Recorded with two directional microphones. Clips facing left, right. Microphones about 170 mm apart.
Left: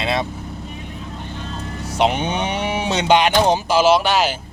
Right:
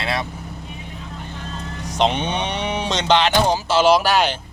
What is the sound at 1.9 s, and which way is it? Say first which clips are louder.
Speech: left 1 dB; 10° left (ahead or behind).